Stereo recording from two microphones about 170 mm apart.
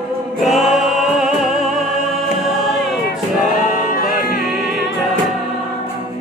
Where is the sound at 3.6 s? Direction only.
55° left (ahead or behind).